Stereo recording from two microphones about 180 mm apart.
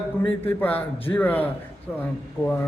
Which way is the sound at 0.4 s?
10° left (ahead or behind).